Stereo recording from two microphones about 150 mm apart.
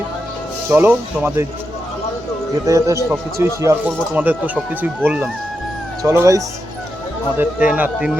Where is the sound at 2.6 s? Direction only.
20° right (ahead or behind).